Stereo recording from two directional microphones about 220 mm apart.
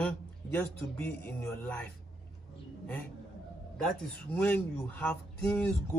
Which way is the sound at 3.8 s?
10° left (ahead or behind).